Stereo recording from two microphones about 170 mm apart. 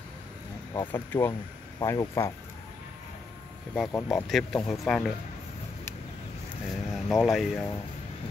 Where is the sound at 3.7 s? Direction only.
10° left (ahead or behind).